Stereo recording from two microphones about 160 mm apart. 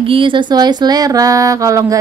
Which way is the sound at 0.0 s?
30° right (ahead or behind).